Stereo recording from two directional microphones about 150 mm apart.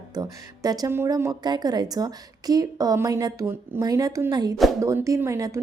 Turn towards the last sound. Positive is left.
turn(degrees=-20)  # may be behind; listen again after turning